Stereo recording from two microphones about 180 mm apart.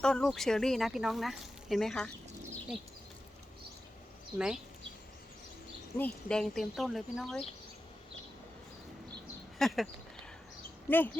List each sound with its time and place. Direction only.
0.0 s speech: 5° left (ahead or behind)
4.4 s speech: 5° right (ahead or behind)
6.0 s speech: 5° left (ahead or behind)
9.6 s speech: centre (ahead or behind)